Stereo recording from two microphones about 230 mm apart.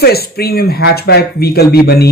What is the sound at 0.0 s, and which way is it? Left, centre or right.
A man's voice, left.